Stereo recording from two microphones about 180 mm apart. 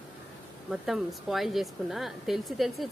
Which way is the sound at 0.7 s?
Centre (ahead or behind).